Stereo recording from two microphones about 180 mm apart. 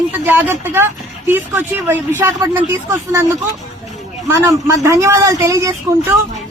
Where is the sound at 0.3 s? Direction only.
10° right (ahead or behind).